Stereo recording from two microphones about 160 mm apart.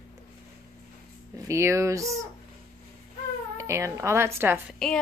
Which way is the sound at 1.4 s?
15° right (ahead or behind).